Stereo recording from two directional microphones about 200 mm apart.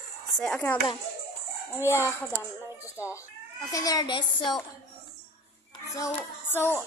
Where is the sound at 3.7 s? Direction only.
20° left (ahead or behind).